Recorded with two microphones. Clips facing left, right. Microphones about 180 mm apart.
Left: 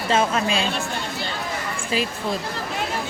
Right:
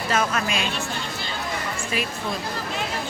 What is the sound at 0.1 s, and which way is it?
Speech, 25° left (ahead or behind).